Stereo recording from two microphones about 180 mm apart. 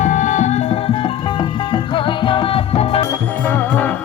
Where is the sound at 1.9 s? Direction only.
30° left (ahead or behind).